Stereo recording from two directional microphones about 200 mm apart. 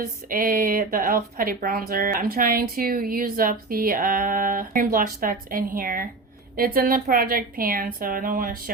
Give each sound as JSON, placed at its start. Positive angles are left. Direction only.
{"t": 0.3, "sound": "speech", "side_deg": -45}